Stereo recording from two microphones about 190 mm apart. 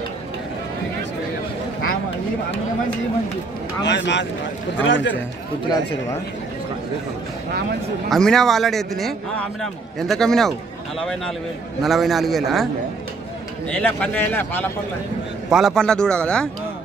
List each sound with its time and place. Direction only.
3.8 s speech: 65° left (ahead or behind)
8.1 s a man's voice: centre (ahead or behind)
13.7 s a man's voice: 5° left (ahead or behind)